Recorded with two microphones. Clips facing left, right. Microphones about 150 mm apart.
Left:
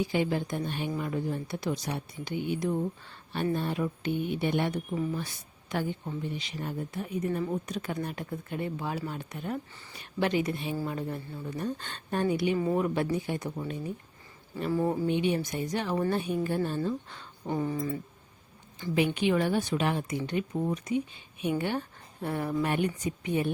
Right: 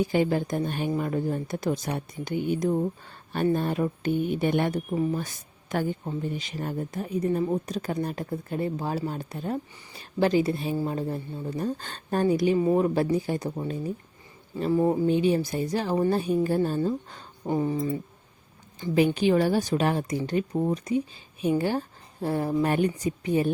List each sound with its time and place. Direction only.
0.0 s a woman's voice: 45° right (ahead or behind)
14.7 s speech: 20° right (ahead or behind)
15.0 s speech: 35° right (ahead or behind)
17.4 s speech: 20° right (ahead or behind)
18.9 s speech: 35° right (ahead or behind)